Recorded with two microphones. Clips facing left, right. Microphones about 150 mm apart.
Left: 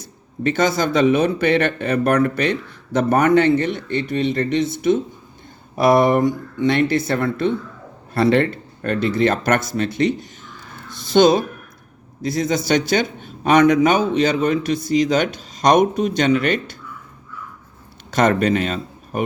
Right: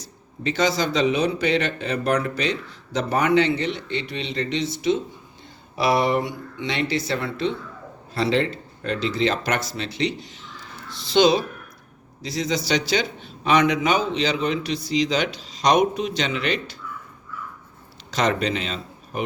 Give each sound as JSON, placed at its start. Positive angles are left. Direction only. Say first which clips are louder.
{"t": 0.0, "sound": "a man's voice", "louder": "left 6 dB", "side_deg": 55}
{"t": 18.1, "sound": "a man's voice", "louder": "left 6 dB", "side_deg": 50}